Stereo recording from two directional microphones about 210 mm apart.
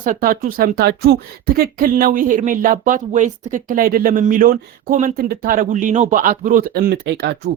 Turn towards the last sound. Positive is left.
turn(degrees=-50)  # may be behind; listen again after turning